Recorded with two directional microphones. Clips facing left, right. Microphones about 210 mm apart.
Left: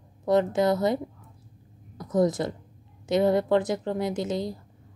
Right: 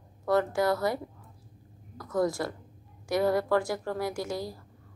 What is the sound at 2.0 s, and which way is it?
A woman's voice, 20° left (ahead or behind).